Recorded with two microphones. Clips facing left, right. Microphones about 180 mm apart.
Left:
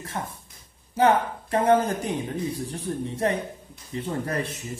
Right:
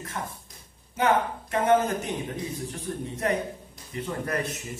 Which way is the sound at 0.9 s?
35° left (ahead or behind).